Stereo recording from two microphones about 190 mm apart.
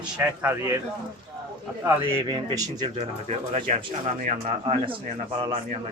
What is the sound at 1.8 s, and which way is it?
Speech, 10° right (ahead or behind).